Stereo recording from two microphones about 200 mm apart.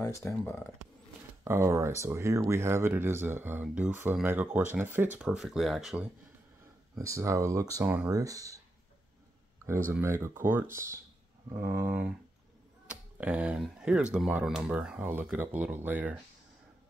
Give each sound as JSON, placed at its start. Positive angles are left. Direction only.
{"t": 0.0, "sound": "speech", "side_deg": 15}
{"t": 1.4, "sound": "speech", "side_deg": -15}
{"t": 7.0, "sound": "speech", "side_deg": -15}
{"t": 9.9, "sound": "speech", "side_deg": -10}